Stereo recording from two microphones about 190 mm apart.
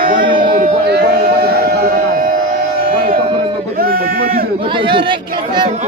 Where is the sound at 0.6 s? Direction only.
55° right (ahead or behind).